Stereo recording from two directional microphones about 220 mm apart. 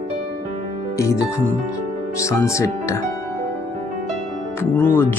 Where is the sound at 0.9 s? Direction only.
15° left (ahead or behind).